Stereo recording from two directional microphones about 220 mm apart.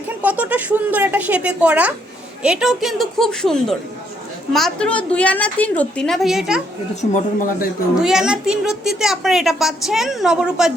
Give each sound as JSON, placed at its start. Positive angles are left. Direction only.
{"t": 0.2, "sound": "a woman's voice", "side_deg": -5}
{"t": 7.1, "sound": "speech", "side_deg": 35}
{"t": 7.9, "sound": "a woman's voice", "side_deg": -5}